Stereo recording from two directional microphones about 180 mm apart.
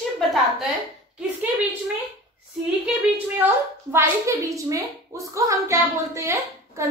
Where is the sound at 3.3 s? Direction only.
10° right (ahead or behind).